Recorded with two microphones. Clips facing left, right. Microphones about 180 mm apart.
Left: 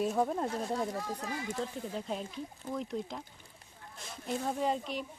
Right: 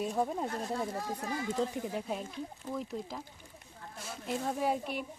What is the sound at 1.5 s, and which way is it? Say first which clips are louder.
Speech: right 4 dB; 15° right (ahead or behind).